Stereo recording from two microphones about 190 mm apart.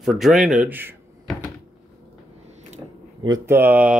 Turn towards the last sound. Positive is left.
turn(degrees=-5)  # may be behind; listen again after turning